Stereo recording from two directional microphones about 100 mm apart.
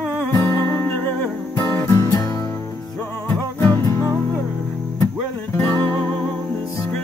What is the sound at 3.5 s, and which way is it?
Music, 20° left (ahead or behind).